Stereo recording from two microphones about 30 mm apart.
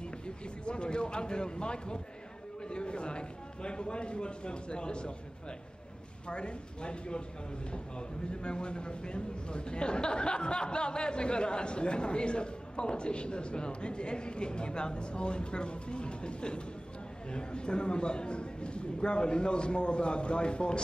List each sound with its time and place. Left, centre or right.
0.7 s a man's voice: left
6.2 s a man's voice: left
8.3 s a man's voice: left